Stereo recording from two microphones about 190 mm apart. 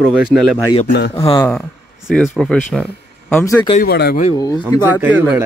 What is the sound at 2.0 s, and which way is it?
Speech, 5° left (ahead or behind).